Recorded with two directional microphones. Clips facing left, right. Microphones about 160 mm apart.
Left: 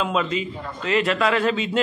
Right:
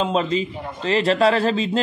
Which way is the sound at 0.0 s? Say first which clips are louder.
Right 3 dB; 35° right (ahead or behind).